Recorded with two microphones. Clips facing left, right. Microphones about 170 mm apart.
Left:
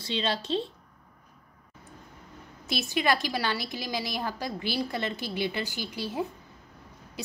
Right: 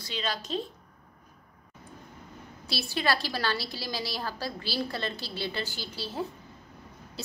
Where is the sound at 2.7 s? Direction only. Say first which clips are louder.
Left 2 dB; 20° left (ahead or behind).